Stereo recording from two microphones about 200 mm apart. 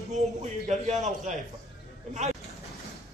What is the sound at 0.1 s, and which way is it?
A man's voice, 35° right (ahead or behind).